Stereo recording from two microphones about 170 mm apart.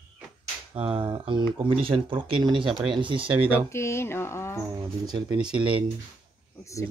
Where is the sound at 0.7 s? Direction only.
30° right (ahead or behind).